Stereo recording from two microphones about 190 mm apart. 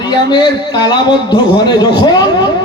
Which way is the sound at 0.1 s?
25° left (ahead or behind).